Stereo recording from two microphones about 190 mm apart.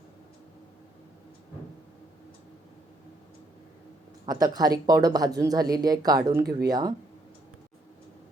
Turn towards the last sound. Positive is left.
turn(degrees=-20)  # may be behind; listen again after turning